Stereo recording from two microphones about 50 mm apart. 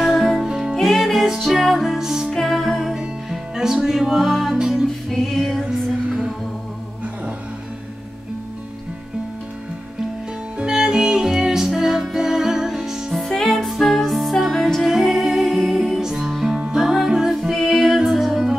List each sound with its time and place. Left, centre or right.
0.1 s music: centre
0.4 s music: centre
0.7 s music: centre
2.3 s music: centre
2.9 s music: centre
4.6 s music: centre
5.1 s music: centre
10.6 s music: centre
13.2 s music: centre
14.9 s music: centre